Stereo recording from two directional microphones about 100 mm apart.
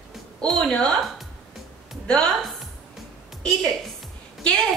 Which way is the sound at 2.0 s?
10° left (ahead or behind).